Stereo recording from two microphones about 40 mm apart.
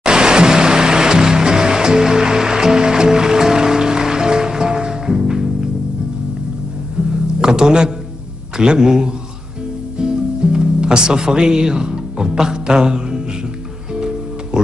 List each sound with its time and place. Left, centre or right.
0.0 s music: centre
7.0 s music: right
7.4 s a man's voice: centre
13.9 s music: centre